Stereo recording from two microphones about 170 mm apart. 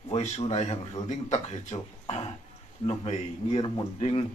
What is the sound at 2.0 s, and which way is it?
Speech, 35° left (ahead or behind).